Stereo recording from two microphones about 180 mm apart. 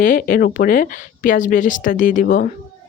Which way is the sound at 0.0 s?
50° left (ahead or behind).